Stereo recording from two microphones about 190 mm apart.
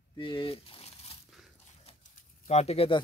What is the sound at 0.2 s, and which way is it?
Speech, 25° left (ahead or behind).